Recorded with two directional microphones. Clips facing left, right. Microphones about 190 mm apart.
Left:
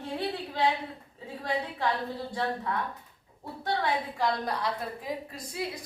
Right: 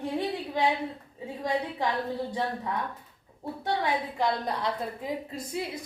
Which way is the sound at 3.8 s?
20° right (ahead or behind).